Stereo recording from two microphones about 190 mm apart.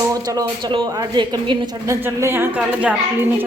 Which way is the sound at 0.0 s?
20° right (ahead or behind).